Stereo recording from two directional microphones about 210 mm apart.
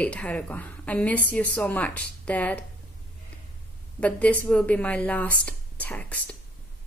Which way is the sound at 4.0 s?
5° left (ahead or behind).